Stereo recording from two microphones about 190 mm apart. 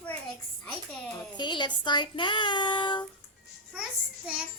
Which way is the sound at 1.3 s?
25° left (ahead or behind).